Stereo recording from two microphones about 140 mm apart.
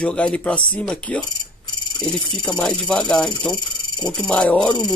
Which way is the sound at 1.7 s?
30° left (ahead or behind).